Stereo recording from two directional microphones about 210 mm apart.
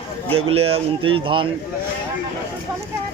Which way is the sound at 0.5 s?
30° right (ahead or behind).